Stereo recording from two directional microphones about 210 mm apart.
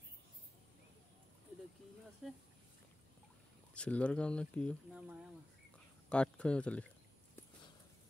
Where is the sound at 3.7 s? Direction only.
5° left (ahead or behind).